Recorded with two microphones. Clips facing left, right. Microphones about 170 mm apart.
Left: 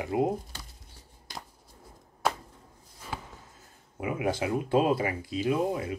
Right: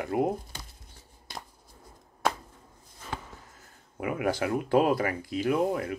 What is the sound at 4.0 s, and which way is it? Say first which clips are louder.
Speech: right 1 dB; 20° left (ahead or behind).